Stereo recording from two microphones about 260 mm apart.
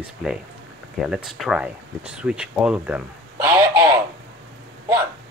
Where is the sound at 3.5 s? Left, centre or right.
Centre.